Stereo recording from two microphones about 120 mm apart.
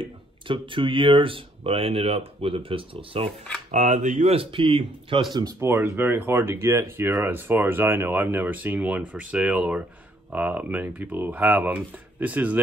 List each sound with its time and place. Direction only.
0.0 s speech: 45° right (ahead or behind)
3.3 s speech: 5° left (ahead or behind)
3.7 s speech: 90° right
4.4 s speech: 45° right (ahead or behind)
5.6 s speech: 20° right (ahead or behind)